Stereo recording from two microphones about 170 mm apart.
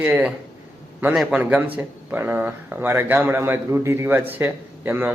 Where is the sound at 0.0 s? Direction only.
10° right (ahead or behind).